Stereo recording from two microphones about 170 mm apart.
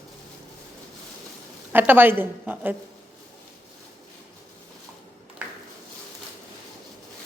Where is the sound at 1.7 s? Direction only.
10° right (ahead or behind).